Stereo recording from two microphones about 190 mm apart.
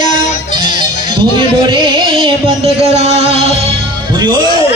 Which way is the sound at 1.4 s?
25° right (ahead or behind).